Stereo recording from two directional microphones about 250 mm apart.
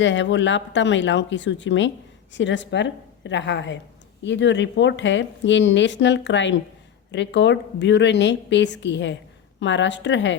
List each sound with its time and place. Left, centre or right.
0.0 s a woman's voice: left